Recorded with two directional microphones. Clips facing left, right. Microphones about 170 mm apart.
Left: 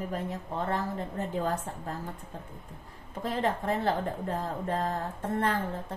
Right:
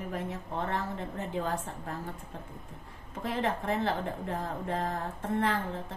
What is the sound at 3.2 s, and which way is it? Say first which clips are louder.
Speech: left 2 dB; 40° left (ahead or behind).